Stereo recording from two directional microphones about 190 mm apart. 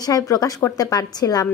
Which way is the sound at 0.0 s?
20° left (ahead or behind).